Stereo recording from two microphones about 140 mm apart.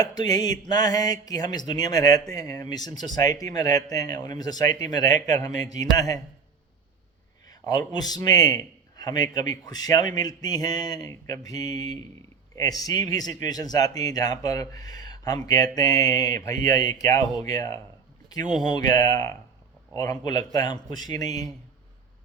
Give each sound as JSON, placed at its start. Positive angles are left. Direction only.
{"t": 0.0, "sound": "speech", "side_deg": 30}
{"t": 7.4, "sound": "a man's voice", "side_deg": 25}